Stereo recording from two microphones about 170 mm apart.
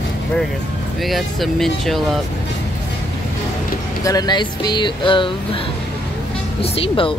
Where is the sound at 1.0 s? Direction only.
Centre (ahead or behind).